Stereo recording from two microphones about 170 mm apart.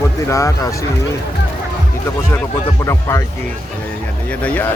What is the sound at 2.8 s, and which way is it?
Speech, 15° left (ahead or behind).